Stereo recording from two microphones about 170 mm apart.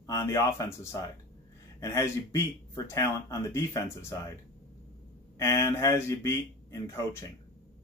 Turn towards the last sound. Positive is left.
turn(degrees=15)  # may be behind; listen again after turning